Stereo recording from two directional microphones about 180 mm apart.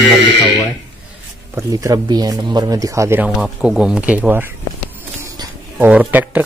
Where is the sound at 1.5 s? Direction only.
20° right (ahead or behind).